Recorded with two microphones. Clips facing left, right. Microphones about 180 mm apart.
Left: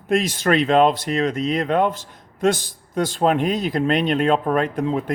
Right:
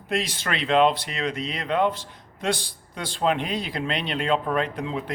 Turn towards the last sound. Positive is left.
turn(degrees=45)  # may be behind; listen again after turning